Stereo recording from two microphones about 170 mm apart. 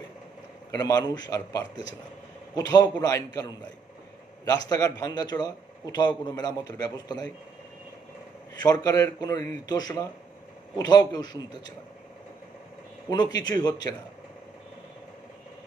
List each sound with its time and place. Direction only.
0.7 s a man's voice: 20° left (ahead or behind)
4.6 s a man's voice: 20° left (ahead or behind)
8.5 s a man's voice: 20° left (ahead or behind)
13.1 s a man's voice: 25° left (ahead or behind)